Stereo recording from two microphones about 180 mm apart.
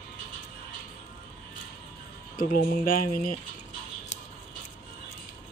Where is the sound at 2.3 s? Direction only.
50° left (ahead or behind).